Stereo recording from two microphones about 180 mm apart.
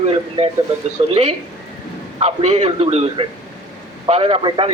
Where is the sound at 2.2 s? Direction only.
35° right (ahead or behind).